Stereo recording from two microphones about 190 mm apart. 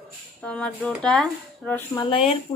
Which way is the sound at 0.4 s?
5° left (ahead or behind).